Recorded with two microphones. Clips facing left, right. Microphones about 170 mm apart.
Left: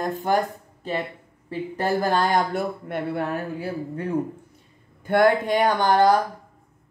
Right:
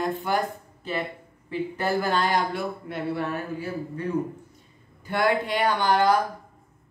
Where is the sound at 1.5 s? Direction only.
40° left (ahead or behind).